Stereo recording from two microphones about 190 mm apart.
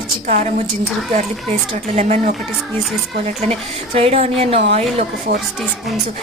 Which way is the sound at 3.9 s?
35° right (ahead or behind).